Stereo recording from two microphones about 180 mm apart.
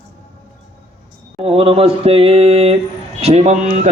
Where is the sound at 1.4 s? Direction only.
35° right (ahead or behind).